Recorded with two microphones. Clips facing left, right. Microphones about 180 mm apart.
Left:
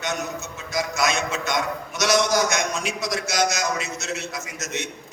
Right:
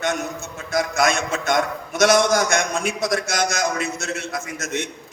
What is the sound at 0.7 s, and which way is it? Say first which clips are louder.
A man's voice: right 4 dB; 50° right (ahead or behind).